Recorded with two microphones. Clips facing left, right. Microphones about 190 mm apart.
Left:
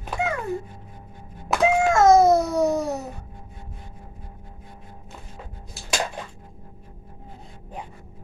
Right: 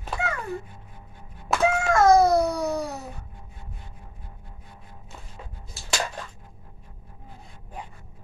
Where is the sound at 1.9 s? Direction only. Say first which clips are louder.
Left 1 dB; 20° left (ahead or behind).